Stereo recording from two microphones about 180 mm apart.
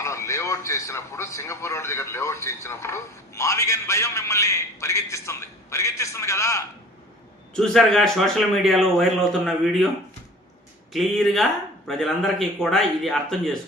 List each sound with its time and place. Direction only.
0.0 s a man's voice: 15° left (ahead or behind)
7.5 s a man's voice: centre (ahead or behind)
10.9 s a man's voice: centre (ahead or behind)